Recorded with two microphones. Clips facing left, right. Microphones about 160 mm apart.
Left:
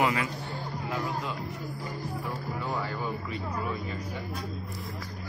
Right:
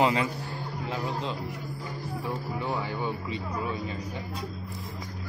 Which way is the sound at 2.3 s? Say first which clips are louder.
Right 3 dB; 20° right (ahead or behind).